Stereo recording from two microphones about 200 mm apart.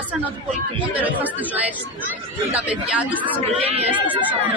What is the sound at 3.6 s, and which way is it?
Speech, 30° right (ahead or behind).